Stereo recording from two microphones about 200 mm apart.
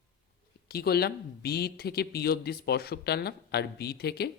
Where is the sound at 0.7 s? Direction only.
50° left (ahead or behind).